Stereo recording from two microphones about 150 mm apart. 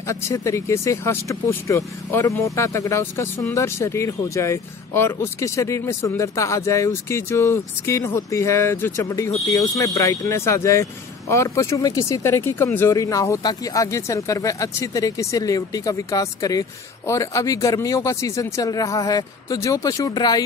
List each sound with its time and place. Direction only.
0.0 s speech: 20° left (ahead or behind)